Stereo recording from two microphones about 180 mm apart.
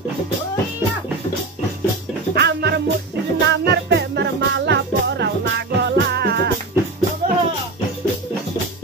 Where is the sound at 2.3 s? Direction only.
65° right (ahead or behind).